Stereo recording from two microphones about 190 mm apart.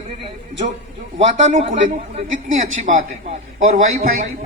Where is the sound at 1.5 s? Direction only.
30° right (ahead or behind).